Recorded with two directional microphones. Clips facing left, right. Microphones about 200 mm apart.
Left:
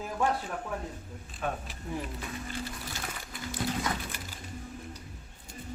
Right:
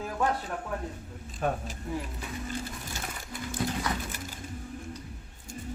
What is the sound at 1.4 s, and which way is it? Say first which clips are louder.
Speech: right 4 dB; 40° right (ahead or behind).